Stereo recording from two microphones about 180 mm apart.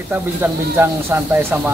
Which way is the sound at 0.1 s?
10° right (ahead or behind).